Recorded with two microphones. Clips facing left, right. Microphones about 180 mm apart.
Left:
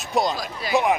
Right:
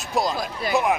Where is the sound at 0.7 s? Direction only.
50° right (ahead or behind).